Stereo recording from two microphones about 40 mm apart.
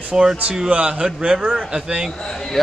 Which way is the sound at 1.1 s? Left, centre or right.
Centre.